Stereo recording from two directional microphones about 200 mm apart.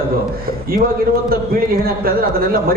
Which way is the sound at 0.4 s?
45° right (ahead or behind).